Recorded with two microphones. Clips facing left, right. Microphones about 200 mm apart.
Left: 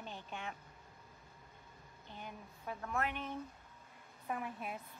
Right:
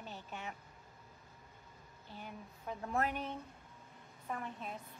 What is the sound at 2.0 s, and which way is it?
Speech, 5° right (ahead or behind).